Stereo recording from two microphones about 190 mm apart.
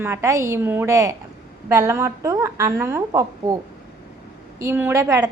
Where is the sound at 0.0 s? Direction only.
15° right (ahead or behind).